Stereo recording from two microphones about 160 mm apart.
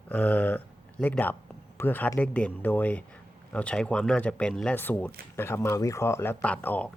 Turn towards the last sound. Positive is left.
turn(degrees=10)  # may be behind; listen again after turning